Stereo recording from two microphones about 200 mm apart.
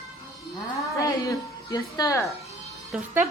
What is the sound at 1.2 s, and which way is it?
Speech, 20° left (ahead or behind).